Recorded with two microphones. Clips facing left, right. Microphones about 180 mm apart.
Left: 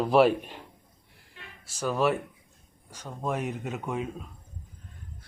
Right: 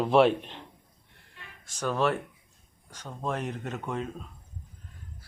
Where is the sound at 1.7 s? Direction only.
5° left (ahead or behind).